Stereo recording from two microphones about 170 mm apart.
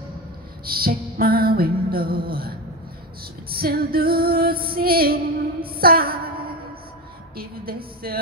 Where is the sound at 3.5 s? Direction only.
65° right (ahead or behind).